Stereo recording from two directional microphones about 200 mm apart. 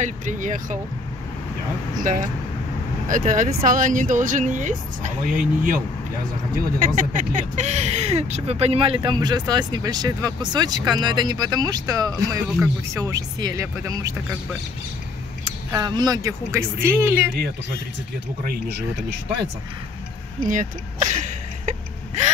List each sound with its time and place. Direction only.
0.0 s speech: 40° right (ahead or behind)
3.1 s speech: 40° right (ahead or behind); by 14.1 s 15° right (ahead or behind)
15.7 s speech: 20° right (ahead or behind)
20.4 s speech: 40° right (ahead or behind)